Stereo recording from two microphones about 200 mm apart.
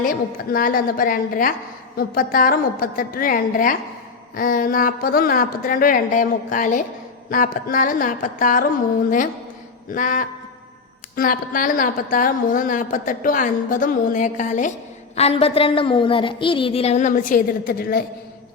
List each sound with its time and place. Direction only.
0.0 s a woman's voice: 45° left (ahead or behind)